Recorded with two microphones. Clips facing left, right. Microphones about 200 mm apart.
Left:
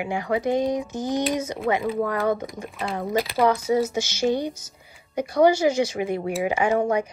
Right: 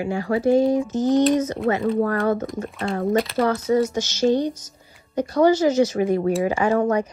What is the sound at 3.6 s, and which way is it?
Speech, 10° left (ahead or behind).